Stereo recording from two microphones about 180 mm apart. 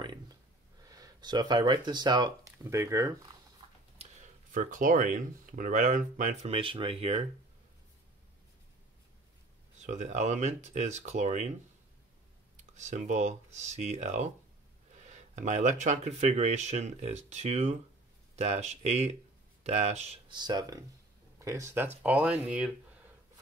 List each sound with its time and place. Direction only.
0.8 s speech: 20° right (ahead or behind)
4.5 s speech: 50° right (ahead or behind)
6.5 s speech: 30° right (ahead or behind)
9.8 s speech: 40° right (ahead or behind)
12.5 s speech: 40° right (ahead or behind)
15.3 s speech: 40° right (ahead or behind); by 22.7 s 5° right (ahead or behind)